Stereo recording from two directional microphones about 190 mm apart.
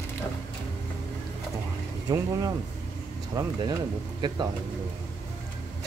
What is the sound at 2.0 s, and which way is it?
Speech, 20° right (ahead or behind).